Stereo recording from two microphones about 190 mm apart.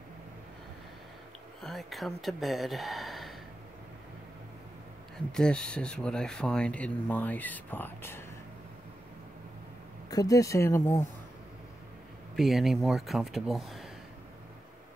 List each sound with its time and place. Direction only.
1.6 s speech: centre (ahead or behind)
5.3 s speech: 5° left (ahead or behind)
10.0 s speech: 20° left (ahead or behind)
12.4 s speech: centre (ahead or behind)